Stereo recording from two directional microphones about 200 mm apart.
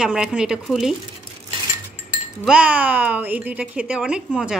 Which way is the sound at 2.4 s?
5° right (ahead or behind).